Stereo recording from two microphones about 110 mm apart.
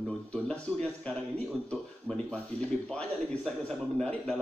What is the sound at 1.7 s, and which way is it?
A man's voice, 10° left (ahead or behind).